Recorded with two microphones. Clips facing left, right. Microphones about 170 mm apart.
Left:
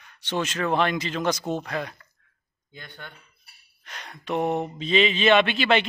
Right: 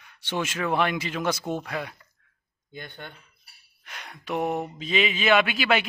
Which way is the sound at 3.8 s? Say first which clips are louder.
Left 1 dB; 10° right (ahead or behind).